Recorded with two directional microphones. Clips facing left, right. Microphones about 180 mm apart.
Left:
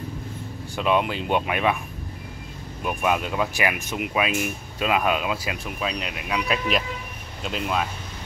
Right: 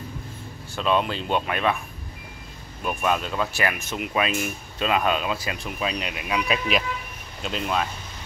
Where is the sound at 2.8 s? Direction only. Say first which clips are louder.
Left 1 dB; 10° left (ahead or behind).